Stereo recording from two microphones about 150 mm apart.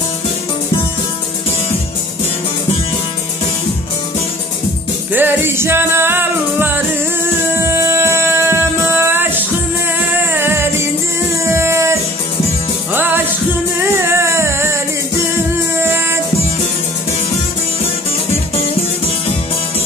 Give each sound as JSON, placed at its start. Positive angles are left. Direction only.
{"t": 5.1, "sound": "music", "side_deg": -15}
{"t": 15.8, "sound": "music", "side_deg": -15}